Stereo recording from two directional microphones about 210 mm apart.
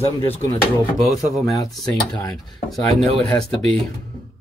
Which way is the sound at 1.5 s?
15° left (ahead or behind).